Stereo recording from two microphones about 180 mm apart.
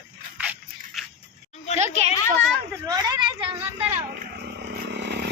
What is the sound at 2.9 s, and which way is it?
Speech, 20° right (ahead or behind).